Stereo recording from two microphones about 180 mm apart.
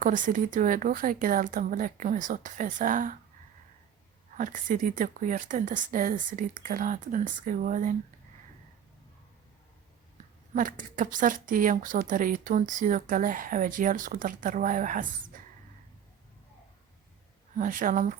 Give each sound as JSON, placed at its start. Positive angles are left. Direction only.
{"t": 0.0, "sound": "speech", "side_deg": -45}
{"t": 4.4, "sound": "speech", "side_deg": -45}
{"t": 10.5, "sound": "speech", "side_deg": -50}
{"t": 17.6, "sound": "speech", "side_deg": -50}